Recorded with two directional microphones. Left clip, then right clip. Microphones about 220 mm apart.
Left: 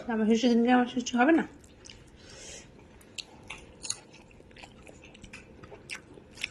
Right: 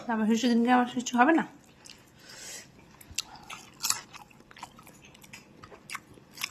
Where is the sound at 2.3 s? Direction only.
15° right (ahead or behind).